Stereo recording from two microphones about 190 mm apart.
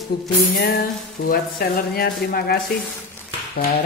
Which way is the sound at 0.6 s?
50° left (ahead or behind).